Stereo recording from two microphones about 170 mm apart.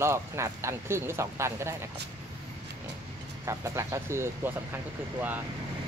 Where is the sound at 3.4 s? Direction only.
20° right (ahead or behind).